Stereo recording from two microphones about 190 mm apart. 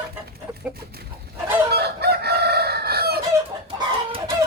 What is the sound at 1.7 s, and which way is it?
Chicken, 60° right (ahead or behind).